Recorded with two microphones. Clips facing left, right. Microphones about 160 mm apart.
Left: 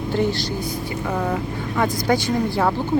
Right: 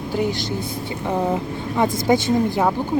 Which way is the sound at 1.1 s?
20° right (ahead or behind).